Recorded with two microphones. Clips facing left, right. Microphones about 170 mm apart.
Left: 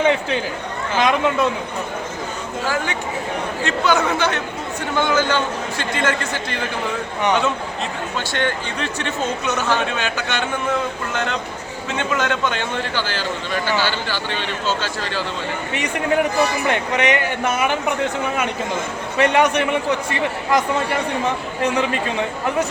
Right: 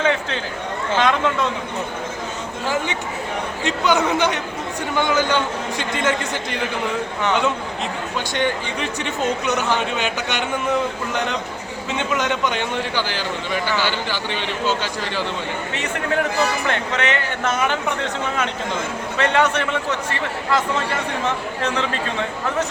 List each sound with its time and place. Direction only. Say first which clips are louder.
0.0 s a man's voice: left 3 dB; 10° left (ahead or behind)
2.6 s speech: even; 20° right (ahead or behind)
8.3 s speech: right 2 dB; 15° right (ahead or behind)
15.7 s a man's voice: left 4 dB; 15° left (ahead or behind)
19.1 s a man's voice: left 3 dB; 15° left (ahead or behind)